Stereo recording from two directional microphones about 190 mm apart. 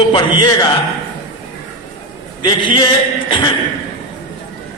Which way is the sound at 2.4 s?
25° left (ahead or behind).